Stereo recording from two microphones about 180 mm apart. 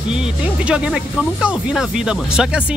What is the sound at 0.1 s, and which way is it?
Speech, 5° right (ahead or behind).